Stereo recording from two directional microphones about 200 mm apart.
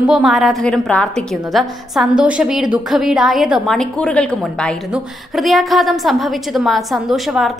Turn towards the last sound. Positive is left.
turn(degrees=0)  # may be behind; listen again after turning